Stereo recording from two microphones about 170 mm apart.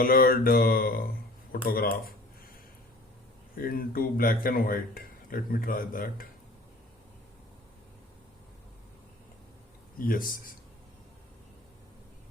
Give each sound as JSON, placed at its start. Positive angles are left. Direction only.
{"t": 0.0, "sound": "speech", "side_deg": 60}
{"t": 3.5, "sound": "speech", "side_deg": 60}
{"t": 10.0, "sound": "speech", "side_deg": 55}